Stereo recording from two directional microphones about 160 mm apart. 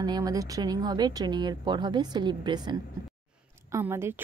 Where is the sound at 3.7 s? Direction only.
15° right (ahead or behind).